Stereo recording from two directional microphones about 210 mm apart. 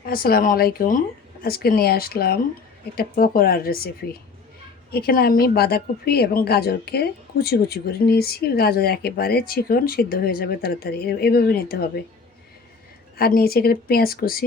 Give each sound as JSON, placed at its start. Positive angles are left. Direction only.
{"t": 0.0, "sound": "a woman's voice", "side_deg": 45}
{"t": 13.1, "sound": "a woman's voice", "side_deg": 45}